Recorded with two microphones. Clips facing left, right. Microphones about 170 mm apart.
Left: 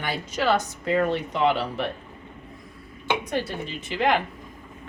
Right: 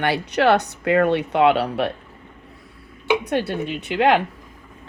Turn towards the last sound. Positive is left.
turn(degrees=-70)  # may be behind; listen again after turning